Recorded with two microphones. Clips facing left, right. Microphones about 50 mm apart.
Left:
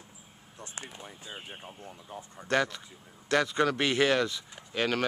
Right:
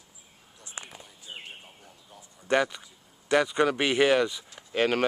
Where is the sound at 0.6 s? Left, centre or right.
Left.